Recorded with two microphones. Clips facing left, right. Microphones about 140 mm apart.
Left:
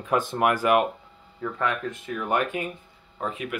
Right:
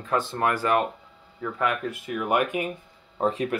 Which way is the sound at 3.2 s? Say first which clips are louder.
Right 6 dB; 35° right (ahead or behind).